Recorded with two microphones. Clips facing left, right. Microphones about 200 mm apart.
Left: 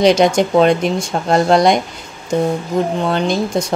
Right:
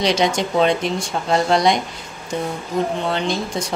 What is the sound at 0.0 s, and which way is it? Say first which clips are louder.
Speech: left 7 dB; 50° left (ahead or behind).